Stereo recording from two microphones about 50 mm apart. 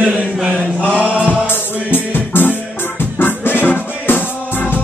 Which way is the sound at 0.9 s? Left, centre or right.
Right.